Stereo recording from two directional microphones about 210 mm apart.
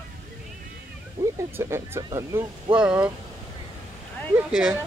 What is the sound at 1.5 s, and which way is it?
Speech, 10° right (ahead or behind).